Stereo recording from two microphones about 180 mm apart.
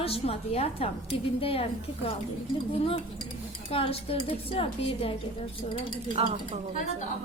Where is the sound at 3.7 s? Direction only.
30° left (ahead or behind).